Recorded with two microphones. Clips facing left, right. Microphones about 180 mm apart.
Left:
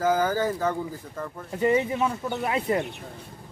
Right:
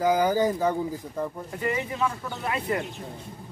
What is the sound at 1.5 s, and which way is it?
Speech, 20° left (ahead or behind).